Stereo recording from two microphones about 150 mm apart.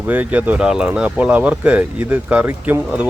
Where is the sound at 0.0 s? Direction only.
10° right (ahead or behind).